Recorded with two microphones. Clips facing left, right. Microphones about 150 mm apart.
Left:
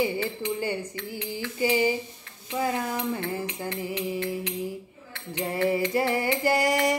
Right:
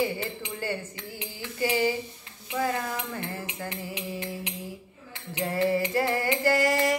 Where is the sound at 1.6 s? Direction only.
20° left (ahead or behind).